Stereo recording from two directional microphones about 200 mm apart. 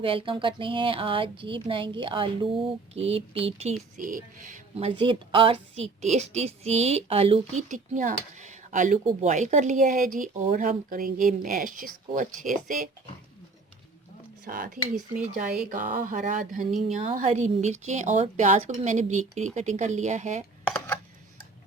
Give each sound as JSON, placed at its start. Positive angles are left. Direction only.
{"t": 0.0, "sound": "speech", "side_deg": -25}
{"t": 3.9, "sound": "a woman's voice", "side_deg": -40}
{"t": 4.7, "sound": "a woman's voice", "side_deg": -25}
{"t": 14.4, "sound": "a woman's voice", "side_deg": -45}
{"t": 20.7, "sound": "a sound", "side_deg": 10}